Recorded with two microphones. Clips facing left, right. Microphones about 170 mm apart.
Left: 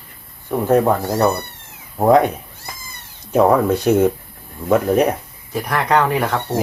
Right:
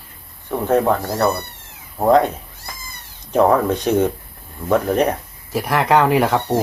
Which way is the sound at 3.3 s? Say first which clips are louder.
Left 1 dB; 5° left (ahead or behind).